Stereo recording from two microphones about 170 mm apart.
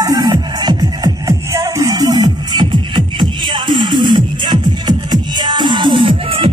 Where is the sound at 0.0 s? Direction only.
20° right (ahead or behind).